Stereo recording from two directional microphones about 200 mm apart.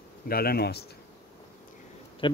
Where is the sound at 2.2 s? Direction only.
25° left (ahead or behind).